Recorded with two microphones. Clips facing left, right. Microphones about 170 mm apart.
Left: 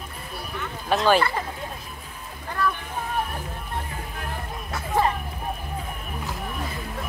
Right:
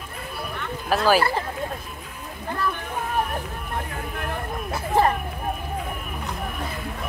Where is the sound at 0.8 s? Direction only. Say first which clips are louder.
Even; 5° right (ahead or behind).